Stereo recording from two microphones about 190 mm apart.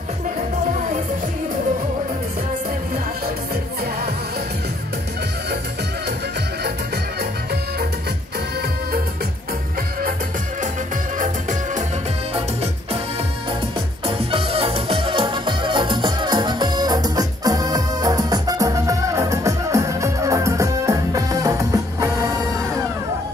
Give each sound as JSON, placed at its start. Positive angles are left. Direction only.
{"t": 14.0, "sound": "music", "side_deg": -30}